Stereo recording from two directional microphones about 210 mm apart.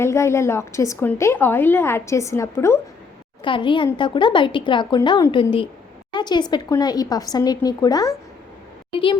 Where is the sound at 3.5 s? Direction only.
25° left (ahead or behind).